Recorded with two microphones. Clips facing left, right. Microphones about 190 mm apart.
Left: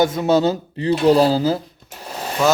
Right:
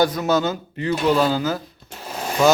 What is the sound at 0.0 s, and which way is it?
Speech, 25° left (ahead or behind).